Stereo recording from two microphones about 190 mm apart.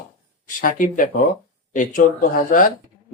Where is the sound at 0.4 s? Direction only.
45° left (ahead or behind).